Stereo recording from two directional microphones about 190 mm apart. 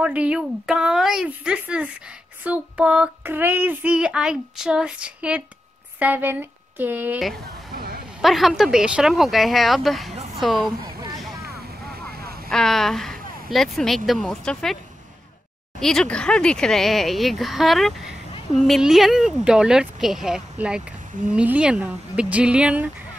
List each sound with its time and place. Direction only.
0.0 s child singing: 5° right (ahead or behind)
5.9 s a woman's voice: 10° right (ahead or behind)
7.7 s a sound: 50° right (ahead or behind)
8.2 s child singing: centre (ahead or behind)
12.4 s speech: centre (ahead or behind)
15.8 s child singing: 5° left (ahead or behind)